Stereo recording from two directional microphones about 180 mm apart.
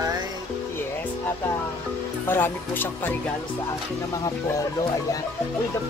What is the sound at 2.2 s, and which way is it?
Speech, 10° left (ahead or behind).